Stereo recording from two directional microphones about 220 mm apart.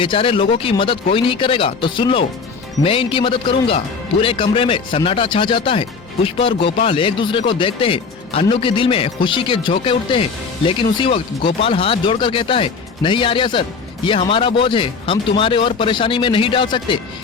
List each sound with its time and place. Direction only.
0.0 s speech: 25° left (ahead or behind)